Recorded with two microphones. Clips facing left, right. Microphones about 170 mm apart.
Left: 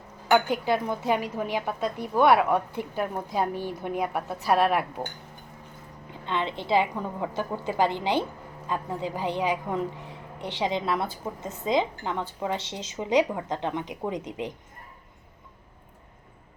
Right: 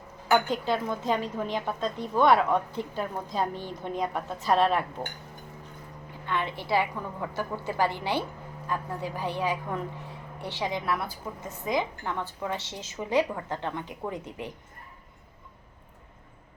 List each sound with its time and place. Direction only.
0.3 s a woman's voice: 10° left (ahead or behind)
6.2 s a woman's voice: 20° left (ahead or behind)